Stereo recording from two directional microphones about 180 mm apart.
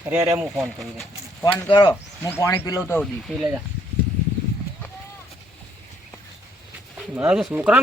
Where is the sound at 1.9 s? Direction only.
15° left (ahead or behind).